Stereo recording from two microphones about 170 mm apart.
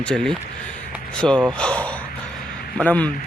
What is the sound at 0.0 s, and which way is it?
Speech, 5° left (ahead or behind).